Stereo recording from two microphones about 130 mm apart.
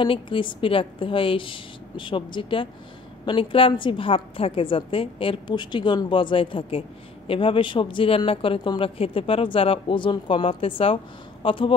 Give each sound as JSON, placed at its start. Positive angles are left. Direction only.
{"t": 0.0, "sound": "a woman's voice", "side_deg": 40}